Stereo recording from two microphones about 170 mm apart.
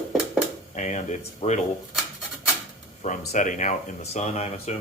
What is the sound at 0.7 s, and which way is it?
Speech, 45° left (ahead or behind).